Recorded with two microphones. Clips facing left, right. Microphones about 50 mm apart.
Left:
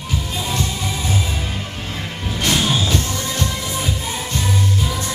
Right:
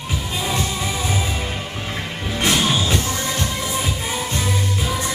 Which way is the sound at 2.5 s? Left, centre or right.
Centre.